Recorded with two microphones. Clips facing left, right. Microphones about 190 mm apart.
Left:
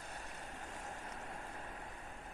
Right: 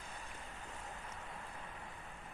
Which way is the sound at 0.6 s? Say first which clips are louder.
Left 2 dB; 40° left (ahead or behind).